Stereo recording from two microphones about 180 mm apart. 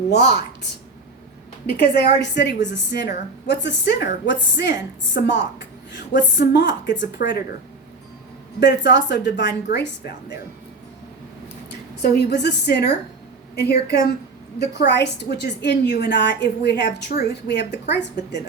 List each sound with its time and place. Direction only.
0.1 s a woman's voice: 70° left (ahead or behind)
1.6 s a woman's voice: 60° left (ahead or behind)
8.6 s a woman's voice: 75° left (ahead or behind)
12.1 s a woman's voice: 70° left (ahead or behind)